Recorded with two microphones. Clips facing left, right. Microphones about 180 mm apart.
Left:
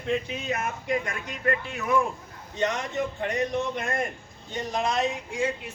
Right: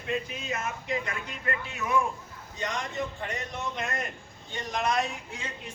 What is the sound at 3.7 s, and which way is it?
Speech, 50° left (ahead or behind).